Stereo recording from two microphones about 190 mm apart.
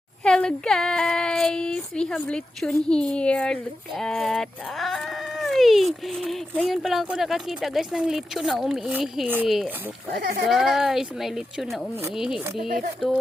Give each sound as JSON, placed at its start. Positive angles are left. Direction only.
{"t": 0.3, "sound": "speech", "side_deg": 5}
{"t": 12.6, "sound": "speech", "side_deg": -45}